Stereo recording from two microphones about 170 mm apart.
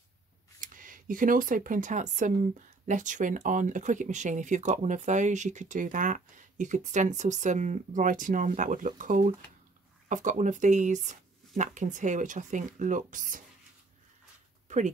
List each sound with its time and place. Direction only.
0.6 s speech: 50° right (ahead or behind)
14.7 s speech: 45° right (ahead or behind)